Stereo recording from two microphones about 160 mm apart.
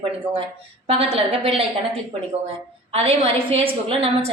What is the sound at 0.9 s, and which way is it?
Speech, 40° right (ahead or behind).